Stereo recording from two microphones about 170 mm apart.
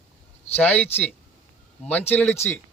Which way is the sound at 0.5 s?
10° left (ahead or behind).